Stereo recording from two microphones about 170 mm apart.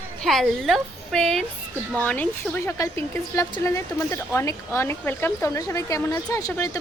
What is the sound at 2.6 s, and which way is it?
Speech, 20° left (ahead or behind).